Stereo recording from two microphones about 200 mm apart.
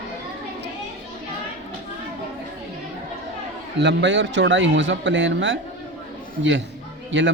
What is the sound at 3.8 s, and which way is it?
Speech, 60° right (ahead or behind).